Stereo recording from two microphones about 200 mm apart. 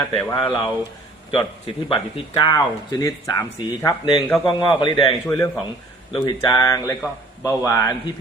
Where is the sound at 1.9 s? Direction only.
25° left (ahead or behind).